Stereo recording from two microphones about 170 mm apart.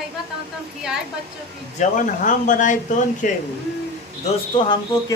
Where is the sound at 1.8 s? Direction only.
50° left (ahead or behind).